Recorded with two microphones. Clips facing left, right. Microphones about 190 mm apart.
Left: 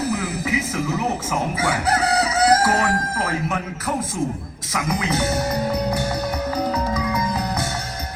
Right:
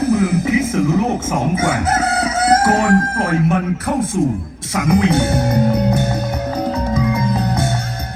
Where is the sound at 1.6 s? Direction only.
50° right (ahead or behind).